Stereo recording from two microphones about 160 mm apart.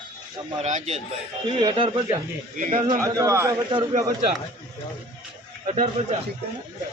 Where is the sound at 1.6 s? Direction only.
30° right (ahead or behind).